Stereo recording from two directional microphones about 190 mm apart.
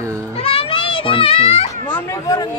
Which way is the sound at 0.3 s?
30° left (ahead or behind).